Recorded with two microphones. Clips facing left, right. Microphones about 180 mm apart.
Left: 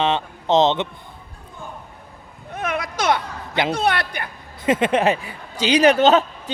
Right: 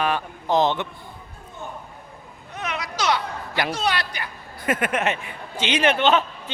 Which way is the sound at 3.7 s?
55° left (ahead or behind).